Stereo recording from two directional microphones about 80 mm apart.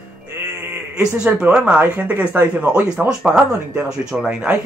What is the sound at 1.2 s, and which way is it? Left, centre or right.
Speech, centre.